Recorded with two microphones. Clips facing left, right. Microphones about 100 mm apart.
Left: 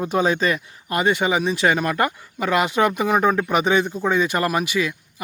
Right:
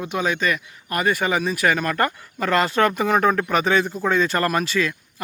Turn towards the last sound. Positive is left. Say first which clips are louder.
# even
turn(degrees=15)  # may be behind; listen again after turning